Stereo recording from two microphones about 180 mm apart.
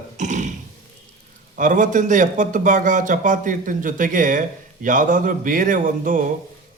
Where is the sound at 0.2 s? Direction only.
40° right (ahead or behind).